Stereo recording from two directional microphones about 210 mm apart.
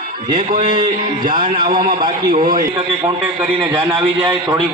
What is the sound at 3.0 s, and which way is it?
Speech, 10° right (ahead or behind).